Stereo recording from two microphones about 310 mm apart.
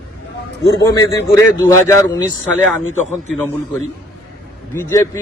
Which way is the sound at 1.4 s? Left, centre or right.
Centre.